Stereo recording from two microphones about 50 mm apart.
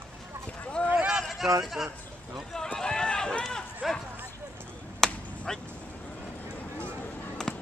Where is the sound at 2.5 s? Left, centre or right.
Centre.